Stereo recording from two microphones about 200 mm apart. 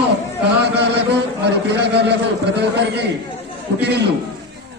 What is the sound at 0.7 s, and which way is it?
A man's voice, 55° right (ahead or behind).